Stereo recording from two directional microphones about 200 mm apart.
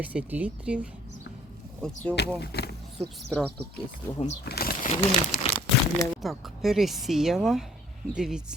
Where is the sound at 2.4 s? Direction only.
55° left (ahead or behind).